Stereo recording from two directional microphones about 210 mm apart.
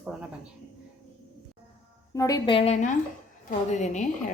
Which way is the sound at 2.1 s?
15° left (ahead or behind).